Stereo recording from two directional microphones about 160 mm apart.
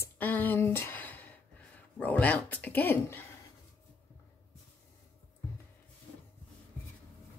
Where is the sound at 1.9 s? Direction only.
10° left (ahead or behind).